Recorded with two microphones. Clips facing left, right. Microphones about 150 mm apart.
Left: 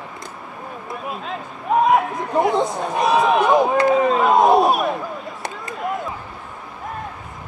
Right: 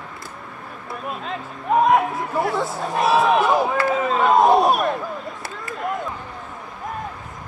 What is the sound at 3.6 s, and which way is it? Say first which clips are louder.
Speech: left 4 dB; 20° left (ahead or behind).